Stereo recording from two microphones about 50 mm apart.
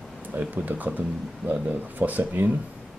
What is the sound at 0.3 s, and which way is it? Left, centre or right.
Speech, right.